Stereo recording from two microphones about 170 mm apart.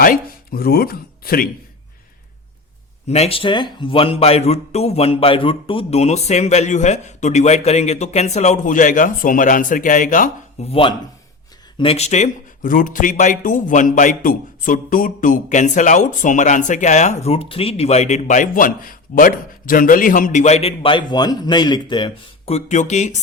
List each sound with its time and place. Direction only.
0.0 s speech: 55° left (ahead or behind)
3.1 s speech: 35° left (ahead or behind)
10.7 s a man's voice: 30° left (ahead or behind)